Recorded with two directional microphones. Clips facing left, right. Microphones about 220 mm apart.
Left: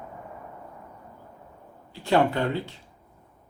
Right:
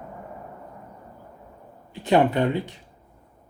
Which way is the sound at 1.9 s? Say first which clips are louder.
Right 3 dB; 20° right (ahead or behind).